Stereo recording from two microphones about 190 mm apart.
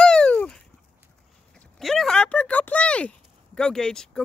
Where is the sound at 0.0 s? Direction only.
5° left (ahead or behind).